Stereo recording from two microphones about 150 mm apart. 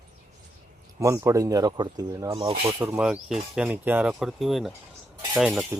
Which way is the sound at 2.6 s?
15° right (ahead or behind).